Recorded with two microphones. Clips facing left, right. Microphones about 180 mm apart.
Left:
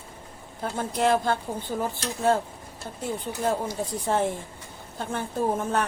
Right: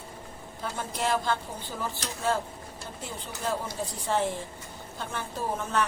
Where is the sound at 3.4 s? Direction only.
50° left (ahead or behind).